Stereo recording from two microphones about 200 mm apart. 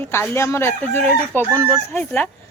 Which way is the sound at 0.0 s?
10° left (ahead or behind).